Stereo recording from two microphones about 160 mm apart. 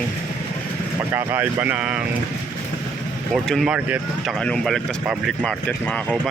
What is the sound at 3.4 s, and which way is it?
Speech, centre (ahead or behind).